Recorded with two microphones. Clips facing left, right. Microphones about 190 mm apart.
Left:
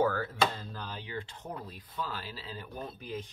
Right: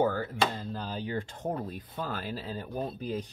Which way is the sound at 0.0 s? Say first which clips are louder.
Right 1 dB; 25° right (ahead or behind).